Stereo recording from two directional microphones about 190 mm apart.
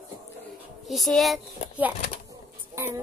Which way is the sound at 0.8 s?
Centre (ahead or behind).